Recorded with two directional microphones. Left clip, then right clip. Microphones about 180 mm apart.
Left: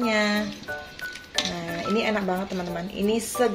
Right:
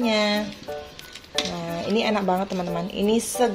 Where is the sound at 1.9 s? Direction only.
20° right (ahead or behind).